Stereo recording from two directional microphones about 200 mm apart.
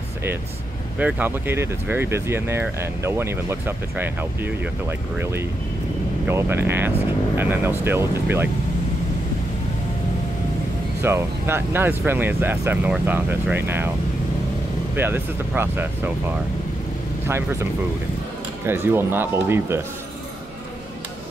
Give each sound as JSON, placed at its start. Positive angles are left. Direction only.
{"t": 0.9, "sound": "speech", "side_deg": -5}
{"t": 11.0, "sound": "speech", "side_deg": -15}
{"t": 15.0, "sound": "speech", "side_deg": -10}
{"t": 18.7, "sound": "speech", "side_deg": -10}